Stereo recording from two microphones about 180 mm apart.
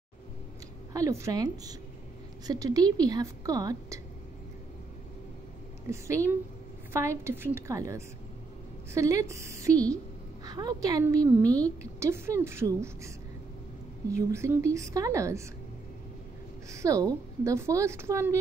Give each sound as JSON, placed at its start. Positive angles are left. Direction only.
{"t": 0.9, "sound": "speech", "side_deg": -15}
{"t": 5.9, "sound": "a woman's voice", "side_deg": -15}
{"t": 14.1, "sound": "a woman's voice", "side_deg": -15}
{"t": 16.7, "sound": "a woman's voice", "side_deg": -15}